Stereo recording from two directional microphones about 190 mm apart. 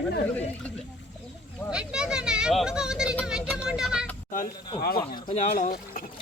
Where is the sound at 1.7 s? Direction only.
5° right (ahead or behind).